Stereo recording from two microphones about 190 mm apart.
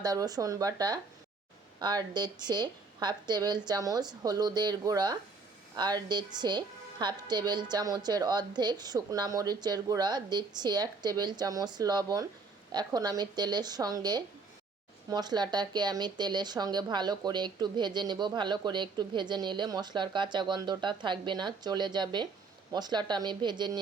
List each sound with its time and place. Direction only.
0.0 s speech: 20° right (ahead or behind)